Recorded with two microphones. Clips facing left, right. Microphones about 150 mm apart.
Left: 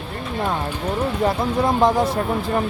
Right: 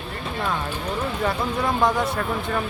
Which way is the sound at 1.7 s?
30° left (ahead or behind).